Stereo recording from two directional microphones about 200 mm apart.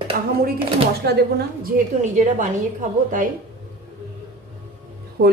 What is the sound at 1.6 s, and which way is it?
Speech, 40° right (ahead or behind).